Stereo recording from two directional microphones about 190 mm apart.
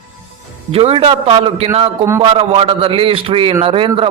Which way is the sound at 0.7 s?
30° right (ahead or behind).